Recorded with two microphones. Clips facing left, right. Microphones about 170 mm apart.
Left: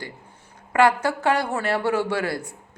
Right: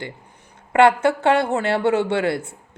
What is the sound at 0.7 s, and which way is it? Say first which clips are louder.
Speech: right 4 dB; 25° right (ahead or behind).